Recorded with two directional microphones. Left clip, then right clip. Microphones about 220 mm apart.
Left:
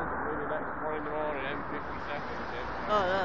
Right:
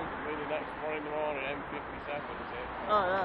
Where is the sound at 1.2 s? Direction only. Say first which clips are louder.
Left 1 dB; 30° right (ahead or behind).